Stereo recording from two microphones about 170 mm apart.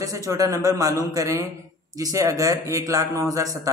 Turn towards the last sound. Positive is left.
turn(degrees=-20)  # may be behind; listen again after turning